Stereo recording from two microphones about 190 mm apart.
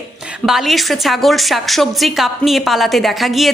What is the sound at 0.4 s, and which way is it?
A woman's voice, centre (ahead or behind).